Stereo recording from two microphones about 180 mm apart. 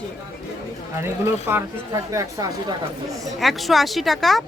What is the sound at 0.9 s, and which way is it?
Speech, 15° right (ahead or behind).